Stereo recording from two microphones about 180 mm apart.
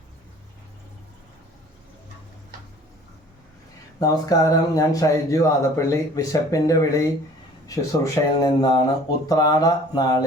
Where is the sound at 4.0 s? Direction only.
20° left (ahead or behind).